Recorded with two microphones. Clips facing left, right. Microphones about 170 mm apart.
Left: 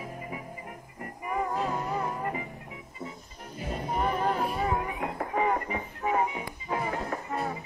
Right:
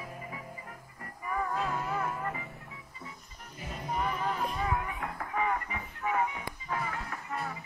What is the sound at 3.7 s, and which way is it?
Music, 30° left (ahead or behind).